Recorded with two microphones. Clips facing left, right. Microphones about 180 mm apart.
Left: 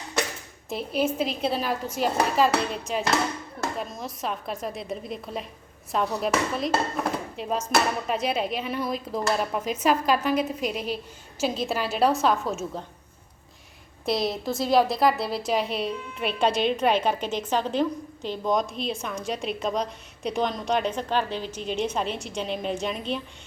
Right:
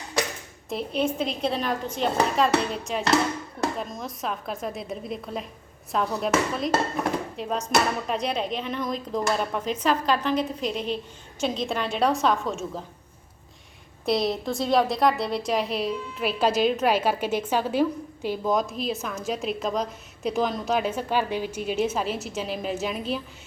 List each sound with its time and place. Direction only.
0.7 s a woman's voice: 5° left (ahead or behind)
14.0 s a woman's voice: centre (ahead or behind)